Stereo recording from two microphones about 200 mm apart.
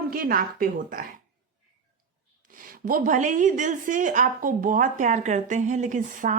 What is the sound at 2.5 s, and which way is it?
A woman's voice, 45° right (ahead or behind).